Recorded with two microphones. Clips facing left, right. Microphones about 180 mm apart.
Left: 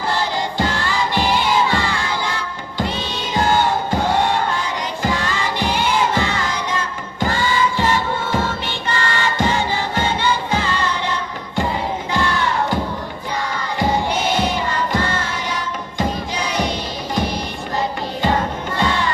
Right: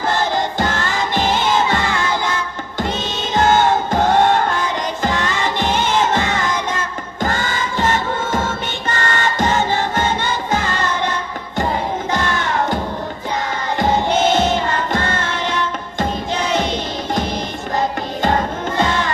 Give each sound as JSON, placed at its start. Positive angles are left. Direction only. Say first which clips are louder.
{"t": 0.1, "sound": "music", "louder": "right 3 dB", "side_deg": -50}
{"t": 6.0, "sound": "crowd", "louder": "right 2 dB", "side_deg": -45}
{"t": 7.2, "sound": "music", "louder": "left 2 dB", "side_deg": -45}
{"t": 12.1, "sound": "crowd", "louder": "left 2 dB", "side_deg": -50}
{"t": 14.1, "sound": "music", "louder": "right 4 dB", "side_deg": -25}
{"t": 14.5, "sound": "music", "louder": "right 2 dB", "side_deg": -50}
{"t": 18.8, "sound": "music", "louder": "right 1 dB", "side_deg": -45}